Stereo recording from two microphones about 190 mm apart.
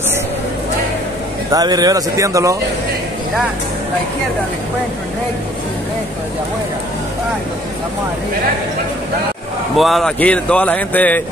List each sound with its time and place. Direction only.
1.5 s speech: 20° right (ahead or behind)
9.8 s a man's voice: centre (ahead or behind)